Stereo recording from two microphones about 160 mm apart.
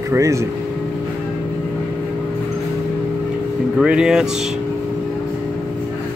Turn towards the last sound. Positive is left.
turn(degrees=-5)  # may be behind; listen again after turning